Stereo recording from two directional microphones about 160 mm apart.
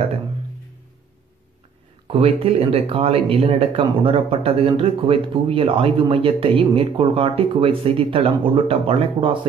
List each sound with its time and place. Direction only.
2.0 s speech: 35° right (ahead or behind)